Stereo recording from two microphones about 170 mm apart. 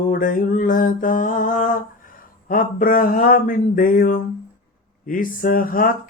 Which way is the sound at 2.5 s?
55° left (ahead or behind).